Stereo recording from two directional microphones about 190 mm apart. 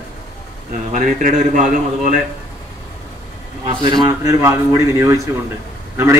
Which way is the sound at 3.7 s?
25° right (ahead or behind).